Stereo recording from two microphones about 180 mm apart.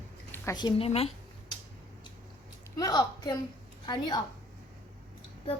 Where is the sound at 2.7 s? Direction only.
20° left (ahead or behind).